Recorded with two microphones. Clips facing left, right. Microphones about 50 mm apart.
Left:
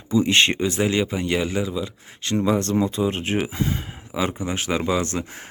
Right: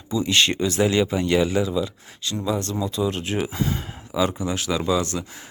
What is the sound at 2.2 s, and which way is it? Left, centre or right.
Speech, left.